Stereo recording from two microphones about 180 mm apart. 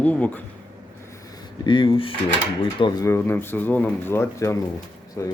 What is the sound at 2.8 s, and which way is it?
Speech, 20° left (ahead or behind).